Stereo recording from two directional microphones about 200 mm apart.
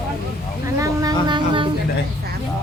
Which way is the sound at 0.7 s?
15° right (ahead or behind).